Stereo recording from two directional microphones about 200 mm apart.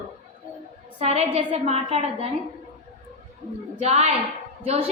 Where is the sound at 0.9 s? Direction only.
30° right (ahead or behind).